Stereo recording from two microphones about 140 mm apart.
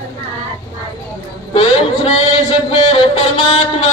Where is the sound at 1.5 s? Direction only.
40° left (ahead or behind).